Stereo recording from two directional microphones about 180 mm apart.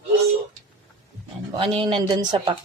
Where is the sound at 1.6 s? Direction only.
25° right (ahead or behind).